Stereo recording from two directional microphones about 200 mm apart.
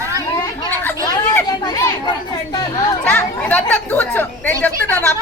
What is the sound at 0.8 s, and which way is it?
Speech, 10° left (ahead or behind).